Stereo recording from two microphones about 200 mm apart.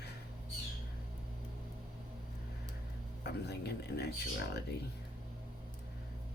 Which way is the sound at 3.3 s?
55° left (ahead or behind).